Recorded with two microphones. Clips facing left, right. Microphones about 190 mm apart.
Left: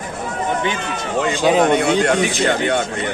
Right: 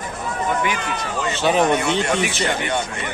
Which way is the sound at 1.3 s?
15° left (ahead or behind).